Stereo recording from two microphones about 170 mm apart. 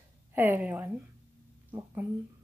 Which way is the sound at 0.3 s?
10° right (ahead or behind).